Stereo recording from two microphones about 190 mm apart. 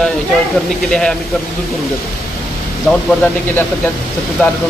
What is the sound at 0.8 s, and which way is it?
Speech, 5° left (ahead or behind).